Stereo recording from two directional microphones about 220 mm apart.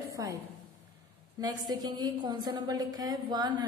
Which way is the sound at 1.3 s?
20° right (ahead or behind).